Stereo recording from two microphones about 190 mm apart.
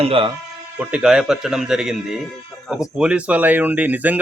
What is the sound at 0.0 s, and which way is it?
Speech, 30° right (ahead or behind).